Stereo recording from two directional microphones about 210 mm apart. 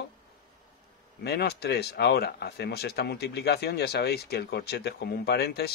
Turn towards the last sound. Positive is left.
turn(degrees=50)  # may be behind; listen again after turning